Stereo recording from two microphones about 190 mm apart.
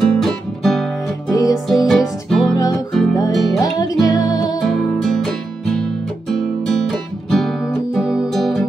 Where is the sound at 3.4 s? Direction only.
20° left (ahead or behind).